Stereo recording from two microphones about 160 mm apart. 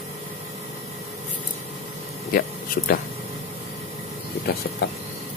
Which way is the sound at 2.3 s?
70° left (ahead or behind).